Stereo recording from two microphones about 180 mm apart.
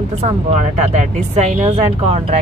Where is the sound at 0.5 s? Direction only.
40° right (ahead or behind).